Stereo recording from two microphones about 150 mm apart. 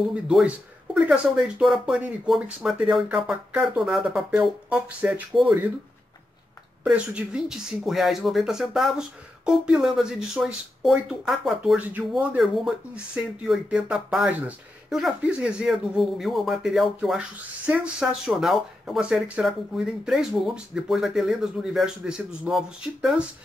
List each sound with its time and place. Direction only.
0.1 s speech: 5° right (ahead or behind)
6.8 s speech: 5° right (ahead or behind)